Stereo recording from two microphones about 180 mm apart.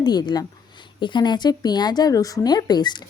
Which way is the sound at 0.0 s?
25° left (ahead or behind).